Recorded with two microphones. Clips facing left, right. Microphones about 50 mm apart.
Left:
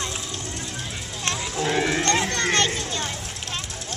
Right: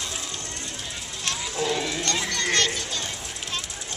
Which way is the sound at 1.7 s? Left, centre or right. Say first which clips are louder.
Left 8 dB; left.